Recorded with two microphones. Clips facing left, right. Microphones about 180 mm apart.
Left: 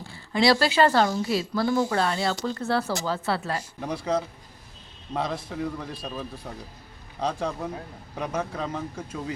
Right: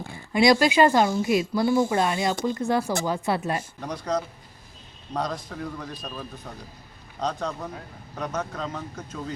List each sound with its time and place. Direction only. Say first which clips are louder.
0.1 s speech: right 2 dB; 15° right (ahead or behind)
3.8 s a man's voice: left 1 dB; 5° left (ahead or behind)